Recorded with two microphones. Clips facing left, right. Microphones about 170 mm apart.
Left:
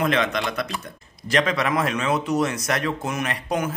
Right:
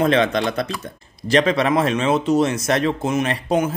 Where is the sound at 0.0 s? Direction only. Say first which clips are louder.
Right 5 dB; 30° right (ahead or behind).